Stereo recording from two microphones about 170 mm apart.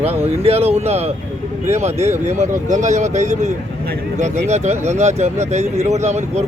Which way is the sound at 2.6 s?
45° right (ahead or behind).